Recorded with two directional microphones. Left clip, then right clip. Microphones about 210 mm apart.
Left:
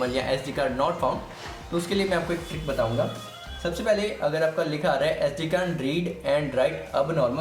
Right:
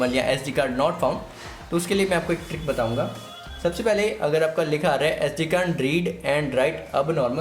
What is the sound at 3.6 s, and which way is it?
Speech, 45° right (ahead or behind).